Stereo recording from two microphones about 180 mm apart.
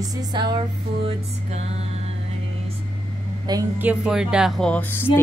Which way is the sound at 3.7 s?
5° right (ahead or behind).